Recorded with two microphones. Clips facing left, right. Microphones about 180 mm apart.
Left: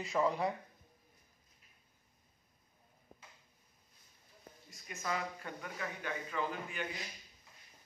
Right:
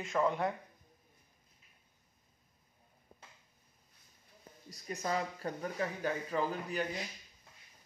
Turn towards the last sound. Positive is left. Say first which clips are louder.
# right 5 dB
turn(degrees=-35)  # may be behind; listen again after turning